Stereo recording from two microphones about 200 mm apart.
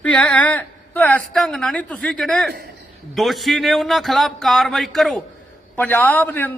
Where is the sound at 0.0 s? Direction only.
5° left (ahead or behind).